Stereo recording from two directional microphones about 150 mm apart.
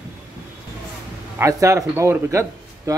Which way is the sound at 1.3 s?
20° right (ahead or behind).